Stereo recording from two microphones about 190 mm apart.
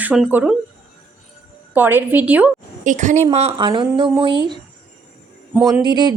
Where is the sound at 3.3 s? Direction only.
30° right (ahead or behind).